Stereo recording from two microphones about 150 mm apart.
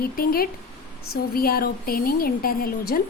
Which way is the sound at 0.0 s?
80° left.